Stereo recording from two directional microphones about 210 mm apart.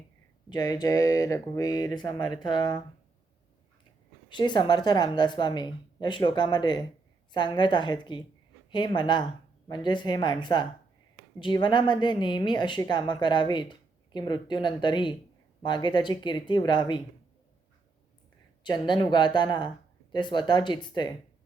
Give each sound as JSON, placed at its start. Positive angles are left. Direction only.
{"t": 0.5, "sound": "speech", "side_deg": 20}
{"t": 4.3, "sound": "speech", "side_deg": 20}
{"t": 18.6, "sound": "speech", "side_deg": 20}